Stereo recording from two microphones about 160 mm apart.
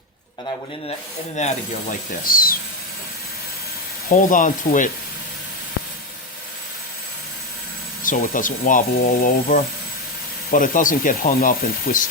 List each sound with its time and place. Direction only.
1.4 s rub: 45° left (ahead or behind)
2.2 s a sound: 65° left (ahead or behind)
4.1 s rub: 55° left (ahead or behind)
8.0 s speech: 55° left (ahead or behind)